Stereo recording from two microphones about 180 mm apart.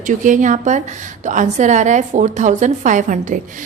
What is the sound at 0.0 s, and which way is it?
A woman's voice, 45° right (ahead or behind).